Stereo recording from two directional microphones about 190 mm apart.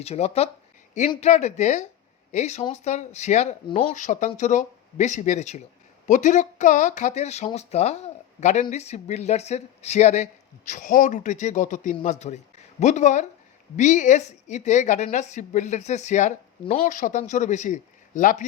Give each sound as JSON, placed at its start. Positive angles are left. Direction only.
{"t": 0.0, "sound": "a woman's voice", "side_deg": 35}
{"t": 3.9, "sound": "a woman's voice", "side_deg": 40}